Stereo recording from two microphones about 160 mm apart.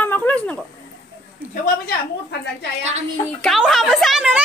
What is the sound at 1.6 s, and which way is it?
Speech, 75° left (ahead or behind).